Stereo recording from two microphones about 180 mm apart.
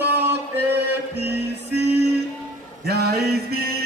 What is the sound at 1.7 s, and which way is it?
Music, 65° right (ahead or behind).